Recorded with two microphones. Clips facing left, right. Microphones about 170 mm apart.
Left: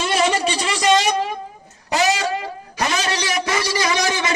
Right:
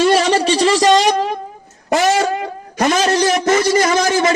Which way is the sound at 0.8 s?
45° right (ahead or behind).